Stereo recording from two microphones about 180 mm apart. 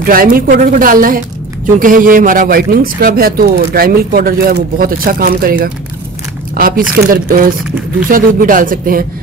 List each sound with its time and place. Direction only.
0.0 s speech: 50° right (ahead or behind)